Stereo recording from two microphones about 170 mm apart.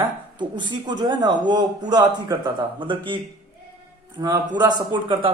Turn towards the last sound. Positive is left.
turn(degrees=-25)  # may be behind; listen again after turning